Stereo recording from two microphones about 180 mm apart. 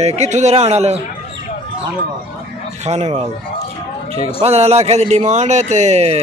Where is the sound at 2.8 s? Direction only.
40° right (ahead or behind).